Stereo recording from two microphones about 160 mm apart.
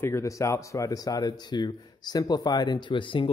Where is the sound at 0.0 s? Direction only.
20° left (ahead or behind).